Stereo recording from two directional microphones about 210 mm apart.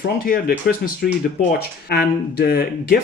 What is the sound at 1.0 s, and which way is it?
Speech, 45° left (ahead or behind).